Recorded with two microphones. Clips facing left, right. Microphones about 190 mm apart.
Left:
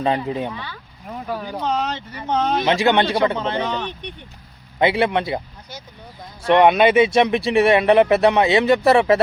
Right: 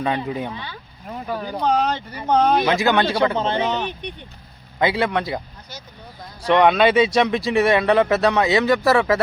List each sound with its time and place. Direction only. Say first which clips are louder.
0.0 s speech: left 2 dB; 30° left (ahead or behind)
0.5 s speech: even; 20° right (ahead or behind)
1.0 s speech: even; 5° left (ahead or behind)
1.6 s speech: right 4 dB; 45° right (ahead or behind)
2.6 s speech: left 1 dB; 25° left (ahead or behind)
3.3 s speech: right 2 dB; 30° right (ahead or behind)
3.8 s speech: right 2 dB; 15° right (ahead or behind)
4.8 s speech: left 2 dB; 25° left (ahead or behind)
6.4 s speech: left 2 dB; 20° left (ahead or behind)